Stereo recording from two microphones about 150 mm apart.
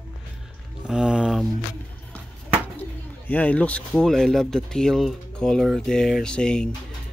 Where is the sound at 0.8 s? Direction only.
5° right (ahead or behind).